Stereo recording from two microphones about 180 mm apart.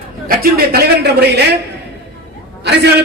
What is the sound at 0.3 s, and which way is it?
Speech, 55° right (ahead or behind).